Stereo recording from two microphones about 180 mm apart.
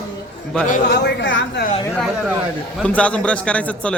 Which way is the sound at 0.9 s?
75° left (ahead or behind).